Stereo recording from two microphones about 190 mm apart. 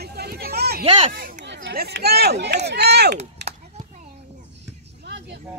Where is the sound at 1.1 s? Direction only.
55° right (ahead or behind).